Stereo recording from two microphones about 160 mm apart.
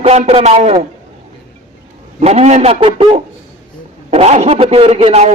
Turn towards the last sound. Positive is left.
turn(degrees=-40)  # may be behind; listen again after turning